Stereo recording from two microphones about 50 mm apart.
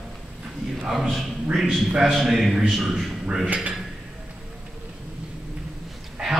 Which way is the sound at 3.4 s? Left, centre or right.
Right.